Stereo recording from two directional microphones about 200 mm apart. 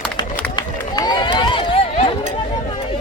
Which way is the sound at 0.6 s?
20° left (ahead or behind).